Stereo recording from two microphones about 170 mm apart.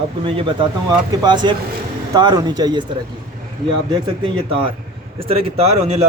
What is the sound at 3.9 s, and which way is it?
Speech, 30° right (ahead or behind).